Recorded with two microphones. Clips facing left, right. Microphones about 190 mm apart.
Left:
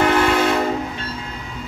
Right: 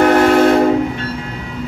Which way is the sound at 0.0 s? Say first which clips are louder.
Right 7 dB; 50° right (ahead or behind).